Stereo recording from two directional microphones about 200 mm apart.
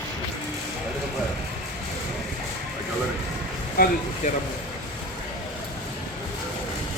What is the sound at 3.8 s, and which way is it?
Speech, 50° left (ahead or behind).